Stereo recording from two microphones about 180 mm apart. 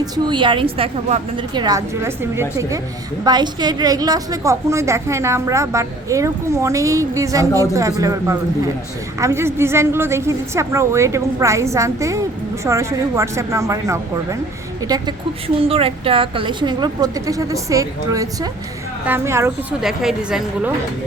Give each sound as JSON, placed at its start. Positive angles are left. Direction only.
{"t": 0.0, "sound": "a woman's voice", "side_deg": -25}
{"t": 15.6, "sound": "a woman's voice", "side_deg": -30}
{"t": 19.8, "sound": "a woman's voice", "side_deg": 0}